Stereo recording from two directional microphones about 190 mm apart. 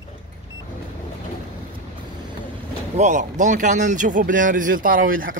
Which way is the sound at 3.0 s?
40° right (ahead or behind).